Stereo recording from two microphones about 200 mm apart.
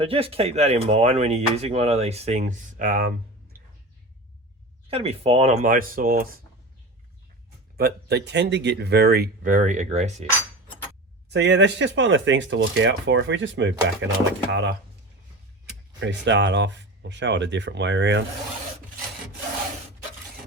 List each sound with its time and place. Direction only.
0.0 s speech: 30° right (ahead or behind)
4.9 s speech: 30° right (ahead or behind); by 6.2 s 45° right (ahead or behind)
7.8 s speech: 55° right (ahead or behind); by 10.2 s 35° right (ahead or behind)
11.3 s speech: 60° right (ahead or behind)
16.0 s speech: 65° right (ahead or behind)